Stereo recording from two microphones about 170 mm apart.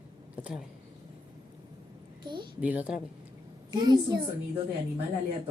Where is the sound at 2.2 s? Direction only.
25° right (ahead or behind).